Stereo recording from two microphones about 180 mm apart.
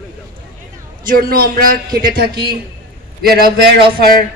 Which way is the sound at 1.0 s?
55° right (ahead or behind).